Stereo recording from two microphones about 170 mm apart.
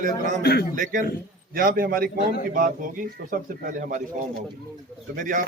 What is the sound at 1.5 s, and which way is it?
A man's voice, 60° right (ahead or behind).